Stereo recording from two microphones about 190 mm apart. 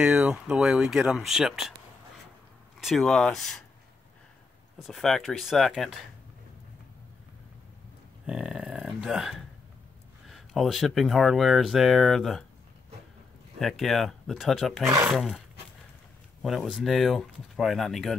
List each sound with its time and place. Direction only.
0.0 s speech: 5° right (ahead or behind)
2.8 s speech: centre (ahead or behind)
4.7 s speech: centre (ahead or behind)
8.3 s speech: 5° right (ahead or behind)
13.6 s speech: centre (ahead or behind)
14.9 s speech: 15° right (ahead or behind)
15.1 s speech: centre (ahead or behind)
16.4 s speech: centre (ahead or behind)